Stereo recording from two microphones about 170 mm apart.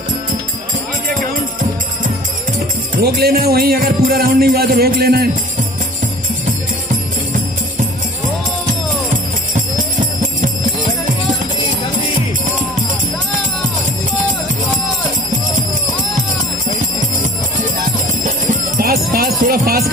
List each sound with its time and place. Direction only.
3.0 s speech: 65° right (ahead or behind)
18.2 s jingle bell: 55° right (ahead or behind)